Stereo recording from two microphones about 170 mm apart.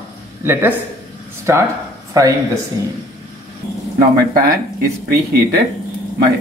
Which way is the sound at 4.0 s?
60° right (ahead or behind).